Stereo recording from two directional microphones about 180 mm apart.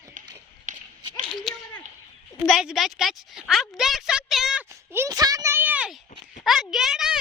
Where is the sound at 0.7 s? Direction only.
45° right (ahead or behind).